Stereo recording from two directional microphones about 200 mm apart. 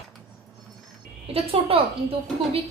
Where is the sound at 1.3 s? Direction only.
30° right (ahead or behind).